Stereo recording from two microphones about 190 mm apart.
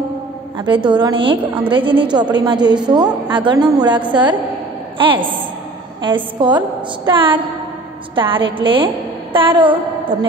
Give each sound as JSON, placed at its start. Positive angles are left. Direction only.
{"t": 0.8, "sound": "a woman's voice", "side_deg": -25}